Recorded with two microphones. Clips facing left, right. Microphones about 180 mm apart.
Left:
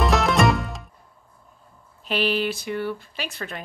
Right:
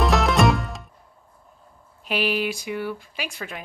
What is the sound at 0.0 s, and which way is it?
Music, centre (ahead or behind).